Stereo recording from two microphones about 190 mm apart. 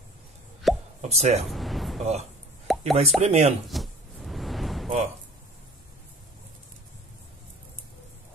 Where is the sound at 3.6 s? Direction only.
Centre (ahead or behind).